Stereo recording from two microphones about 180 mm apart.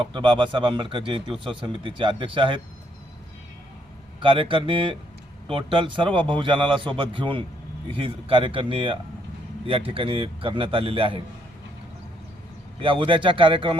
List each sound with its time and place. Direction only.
0.1 s speech: 25° right (ahead or behind)
4.2 s speech: 30° right (ahead or behind)
12.8 s speech: 30° right (ahead or behind)